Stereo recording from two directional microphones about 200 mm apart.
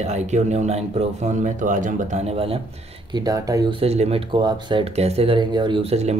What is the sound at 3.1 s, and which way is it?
Speech, 15° right (ahead or behind).